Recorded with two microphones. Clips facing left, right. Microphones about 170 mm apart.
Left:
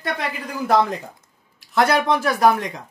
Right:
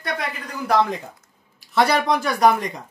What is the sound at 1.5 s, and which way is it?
Speech, centre (ahead or behind).